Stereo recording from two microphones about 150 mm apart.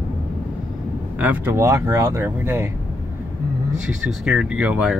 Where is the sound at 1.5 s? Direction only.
20° right (ahead or behind).